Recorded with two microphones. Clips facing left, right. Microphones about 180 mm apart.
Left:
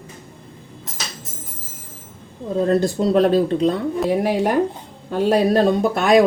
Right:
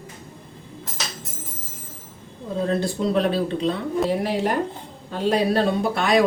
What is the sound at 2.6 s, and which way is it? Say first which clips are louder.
Speech: left 5 dB; 45° left (ahead or behind).